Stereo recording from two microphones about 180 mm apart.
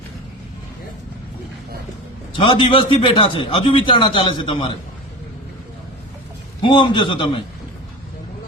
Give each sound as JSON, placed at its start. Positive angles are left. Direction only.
{"t": 2.3, "sound": "a man's voice", "side_deg": 30}
{"t": 6.6, "sound": "a man's voice", "side_deg": 25}